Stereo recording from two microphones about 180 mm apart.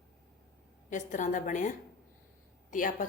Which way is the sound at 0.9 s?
45° left (ahead or behind).